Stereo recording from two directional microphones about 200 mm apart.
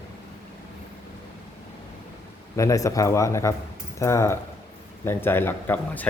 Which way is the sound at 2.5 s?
15° left (ahead or behind).